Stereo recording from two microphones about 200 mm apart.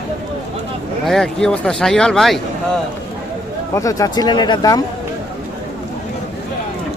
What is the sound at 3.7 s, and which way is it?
Speech, 15° left (ahead or behind).